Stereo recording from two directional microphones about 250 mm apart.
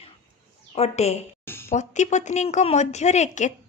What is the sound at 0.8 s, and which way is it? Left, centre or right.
Speech, left.